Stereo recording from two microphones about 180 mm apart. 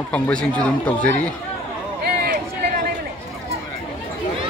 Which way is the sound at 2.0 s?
60° right (ahead or behind).